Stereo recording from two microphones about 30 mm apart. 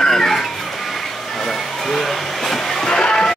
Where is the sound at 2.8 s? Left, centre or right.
Left.